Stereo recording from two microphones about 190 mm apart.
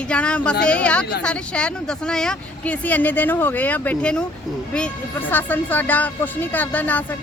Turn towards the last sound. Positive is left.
turn(degrees=10)  # may be behind; listen again after turning